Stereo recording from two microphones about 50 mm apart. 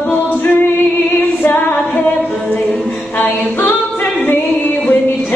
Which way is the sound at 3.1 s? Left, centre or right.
Left.